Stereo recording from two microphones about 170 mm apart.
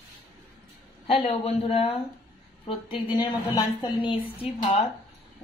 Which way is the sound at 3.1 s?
25° left (ahead or behind).